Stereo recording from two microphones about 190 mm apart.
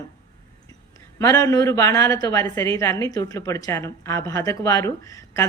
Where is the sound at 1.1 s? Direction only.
15° left (ahead or behind).